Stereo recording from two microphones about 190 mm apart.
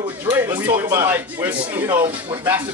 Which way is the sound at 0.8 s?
15° right (ahead or behind).